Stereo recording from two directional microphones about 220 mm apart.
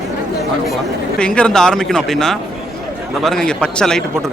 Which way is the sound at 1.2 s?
5° left (ahead or behind).